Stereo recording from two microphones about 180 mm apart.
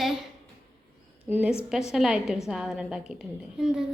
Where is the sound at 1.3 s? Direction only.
10° right (ahead or behind).